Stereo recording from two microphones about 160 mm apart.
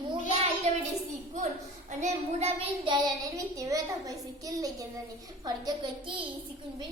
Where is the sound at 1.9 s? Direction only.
45° right (ahead or behind).